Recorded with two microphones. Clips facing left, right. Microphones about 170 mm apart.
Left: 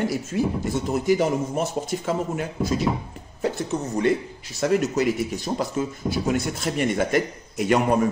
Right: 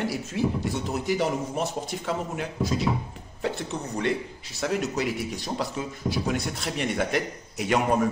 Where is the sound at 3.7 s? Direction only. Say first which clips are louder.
Left 6 dB; 20° left (ahead or behind).